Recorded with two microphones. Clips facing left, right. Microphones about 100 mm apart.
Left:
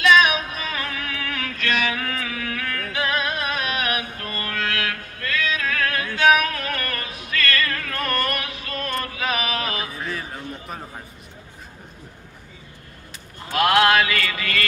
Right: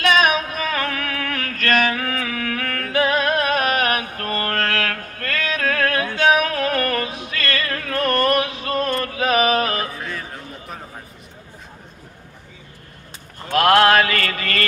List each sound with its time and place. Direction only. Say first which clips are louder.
0.0 s music: even; 45° right (ahead or behind)
9.9 s a sound: even; centre (ahead or behind)
13.6 s mantra: right 3 dB; 50° right (ahead or behind)